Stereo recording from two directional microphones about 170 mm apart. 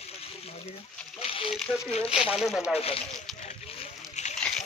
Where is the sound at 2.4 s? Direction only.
5° right (ahead or behind).